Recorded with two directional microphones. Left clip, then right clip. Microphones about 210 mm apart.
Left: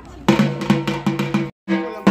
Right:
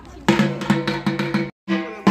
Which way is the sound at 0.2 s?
5° right (ahead or behind).